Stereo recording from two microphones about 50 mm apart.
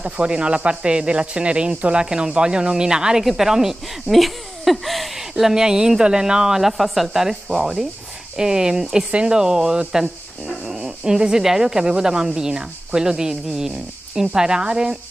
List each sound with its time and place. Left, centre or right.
0.0 s speech: right